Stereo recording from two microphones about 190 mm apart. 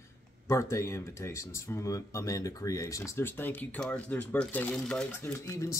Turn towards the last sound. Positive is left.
turn(degrees=15)  # may be behind; listen again after turning